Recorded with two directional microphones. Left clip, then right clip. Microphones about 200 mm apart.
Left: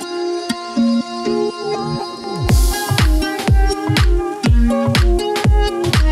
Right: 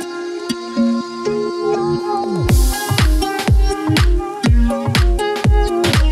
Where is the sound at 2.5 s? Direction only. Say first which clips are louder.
Even; centre (ahead or behind).